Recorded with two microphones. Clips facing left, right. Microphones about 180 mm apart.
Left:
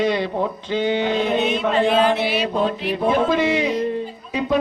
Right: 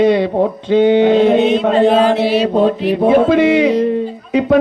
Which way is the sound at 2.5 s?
55° right (ahead or behind).